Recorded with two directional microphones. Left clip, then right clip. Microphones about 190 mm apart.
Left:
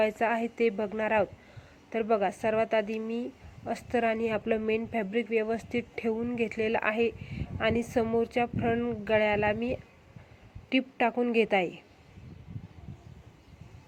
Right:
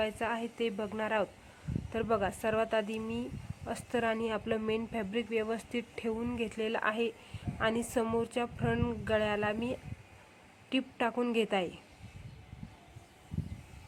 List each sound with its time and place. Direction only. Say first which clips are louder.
0.0 s a woman's voice: left 7 dB; 15° left (ahead or behind)